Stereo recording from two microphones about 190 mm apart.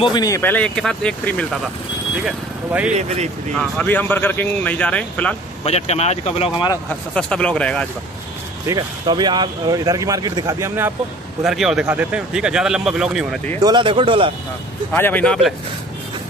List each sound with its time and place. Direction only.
0.0 s speech: 20° left (ahead or behind)
2.2 s speech: 5° right (ahead or behind)
2.9 s speech: 35° right (ahead or behind)
3.5 s speech: 5° left (ahead or behind)
5.6 s speech: 35° left (ahead or behind)
6.7 s speech: 5° left (ahead or behind)
8.6 s speech: 25° right (ahead or behind)
11.4 s speech: centre (ahead or behind)
13.6 s speech: 25° right (ahead or behind)
14.9 s speech: 10° left (ahead or behind)